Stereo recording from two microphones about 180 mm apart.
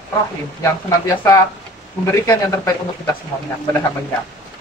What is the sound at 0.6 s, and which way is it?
A man's voice, 15° left (ahead or behind).